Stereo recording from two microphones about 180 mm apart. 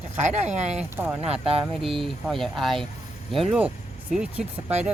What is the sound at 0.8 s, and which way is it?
Speech, 10° right (ahead or behind).